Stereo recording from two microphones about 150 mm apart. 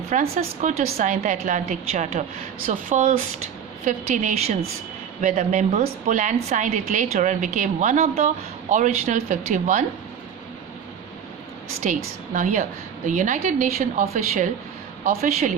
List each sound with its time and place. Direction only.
0.1 s a woman's voice: 55° right (ahead or behind)
11.8 s a woman's voice: 60° right (ahead or behind)
15.2 s a woman's voice: 50° right (ahead or behind)